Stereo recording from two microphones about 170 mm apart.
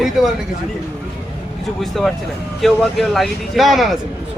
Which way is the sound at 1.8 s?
Centre (ahead or behind).